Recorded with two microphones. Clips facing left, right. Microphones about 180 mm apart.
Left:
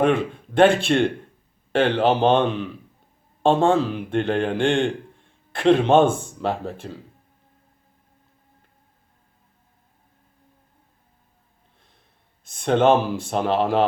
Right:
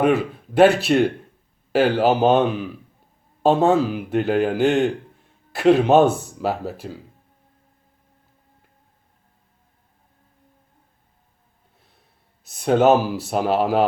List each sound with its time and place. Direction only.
0.0 s speech: 5° right (ahead or behind)
12.5 s speech: 5° right (ahead or behind)